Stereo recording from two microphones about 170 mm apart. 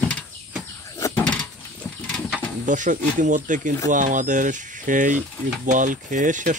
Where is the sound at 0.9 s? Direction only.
15° left (ahead or behind).